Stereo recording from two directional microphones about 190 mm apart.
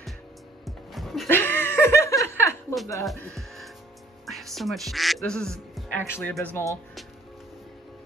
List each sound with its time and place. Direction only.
0.7 s music: centre (ahead or behind)
1.2 s laughter: 10° left (ahead or behind)
3.3 s music: centre (ahead or behind)
4.3 s speech: centre (ahead or behind)